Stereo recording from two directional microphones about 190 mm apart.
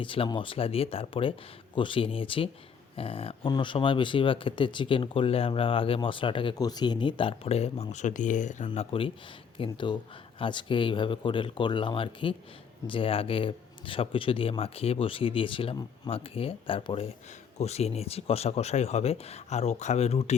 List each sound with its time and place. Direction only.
0.0 s speech: 25° left (ahead or behind)